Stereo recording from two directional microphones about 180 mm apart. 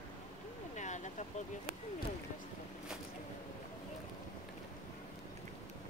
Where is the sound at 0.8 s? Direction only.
40° left (ahead or behind).